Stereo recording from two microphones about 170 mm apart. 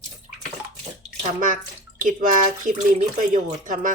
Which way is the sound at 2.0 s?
50° right (ahead or behind).